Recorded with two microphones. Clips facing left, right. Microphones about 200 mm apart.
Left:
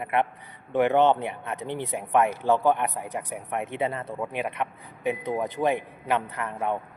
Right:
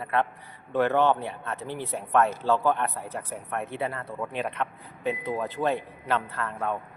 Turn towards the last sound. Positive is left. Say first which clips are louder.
# left 2 dB
turn(degrees=15)  # may be behind; listen again after turning